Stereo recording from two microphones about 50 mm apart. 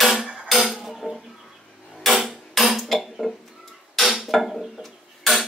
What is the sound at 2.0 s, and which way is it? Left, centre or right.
Dishes, centre.